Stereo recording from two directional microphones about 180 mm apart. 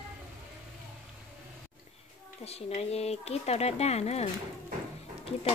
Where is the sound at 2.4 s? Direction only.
35° left (ahead or behind).